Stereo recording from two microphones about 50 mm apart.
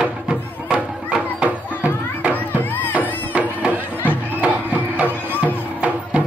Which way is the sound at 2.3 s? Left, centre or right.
Left.